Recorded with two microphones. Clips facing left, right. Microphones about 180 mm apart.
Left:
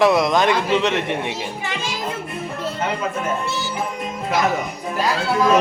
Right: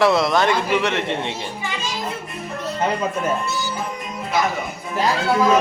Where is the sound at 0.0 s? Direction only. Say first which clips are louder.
Left 1 dB; 15° left (ahead or behind).